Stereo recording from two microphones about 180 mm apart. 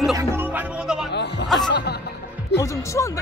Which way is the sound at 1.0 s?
70° left (ahead or behind).